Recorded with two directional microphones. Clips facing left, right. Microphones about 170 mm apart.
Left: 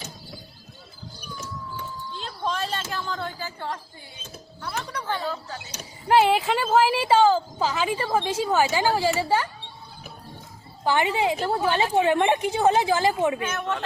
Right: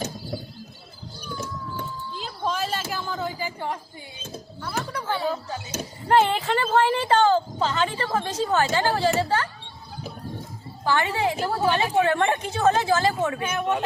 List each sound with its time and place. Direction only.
2.1 s a sound: 5° right (ahead or behind)
4.6 s a sound: 5° right (ahead or behind)
6.1 s speech: 5° left (ahead or behind)
10.8 s speech: 15° left (ahead or behind)
11.3 s speech: 10° right (ahead or behind)
11.7 s speech: 15° left (ahead or behind)
13.4 s speech: 15° right (ahead or behind)